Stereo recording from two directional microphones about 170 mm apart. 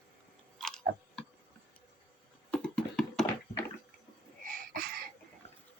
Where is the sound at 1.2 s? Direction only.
5° left (ahead or behind).